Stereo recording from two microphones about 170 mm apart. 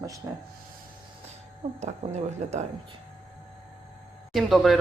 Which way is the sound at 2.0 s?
45° right (ahead or behind).